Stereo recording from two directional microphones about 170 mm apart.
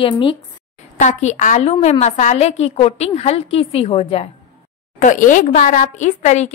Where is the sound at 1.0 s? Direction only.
45° left (ahead or behind).